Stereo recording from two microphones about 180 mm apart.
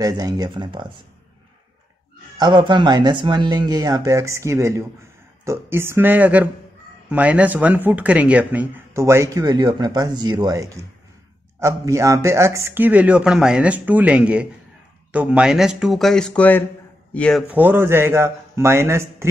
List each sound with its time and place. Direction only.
0.0 s speech: 20° right (ahead or behind)
2.3 s a man's voice: 25° right (ahead or behind); by 17.4 s 5° left (ahead or behind)
17.5 s speech: 10° right (ahead or behind)